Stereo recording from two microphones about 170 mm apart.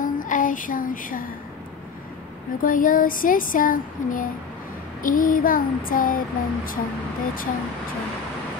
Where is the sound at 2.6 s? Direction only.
55° left (ahead or behind).